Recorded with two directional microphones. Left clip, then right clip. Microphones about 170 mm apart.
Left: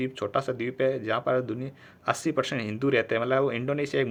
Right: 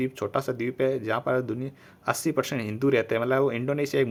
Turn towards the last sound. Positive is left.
turn(degrees=-35)  # may be behind; listen again after turning